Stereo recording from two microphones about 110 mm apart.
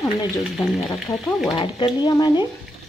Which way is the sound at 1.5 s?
45° left (ahead or behind).